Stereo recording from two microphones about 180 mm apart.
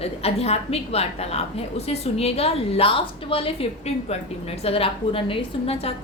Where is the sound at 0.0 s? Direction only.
35° left (ahead or behind).